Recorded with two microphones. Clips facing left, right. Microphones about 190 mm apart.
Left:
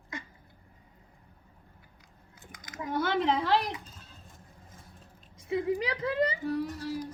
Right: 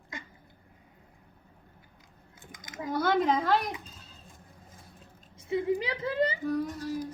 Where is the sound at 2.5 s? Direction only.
25° right (ahead or behind).